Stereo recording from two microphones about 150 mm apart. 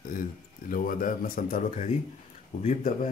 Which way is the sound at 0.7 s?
70° left (ahead or behind).